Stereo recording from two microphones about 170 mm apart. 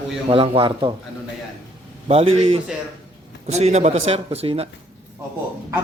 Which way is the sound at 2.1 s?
35° right (ahead or behind).